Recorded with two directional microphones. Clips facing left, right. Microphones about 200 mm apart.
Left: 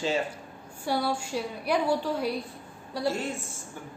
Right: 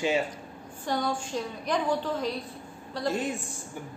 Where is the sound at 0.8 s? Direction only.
10° left (ahead or behind).